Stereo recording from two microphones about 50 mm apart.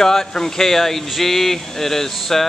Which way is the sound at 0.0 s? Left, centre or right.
Centre.